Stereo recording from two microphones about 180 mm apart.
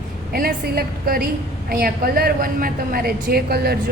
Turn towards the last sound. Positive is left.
turn(degrees=-60)  # may be behind; listen again after turning